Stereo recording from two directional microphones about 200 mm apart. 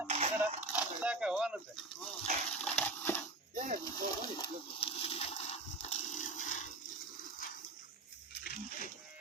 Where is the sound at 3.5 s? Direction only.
40° right (ahead or behind).